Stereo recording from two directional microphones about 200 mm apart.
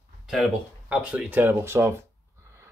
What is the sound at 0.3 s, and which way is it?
Speech, centre (ahead or behind).